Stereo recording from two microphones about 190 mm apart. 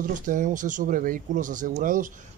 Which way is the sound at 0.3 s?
45° right (ahead or behind).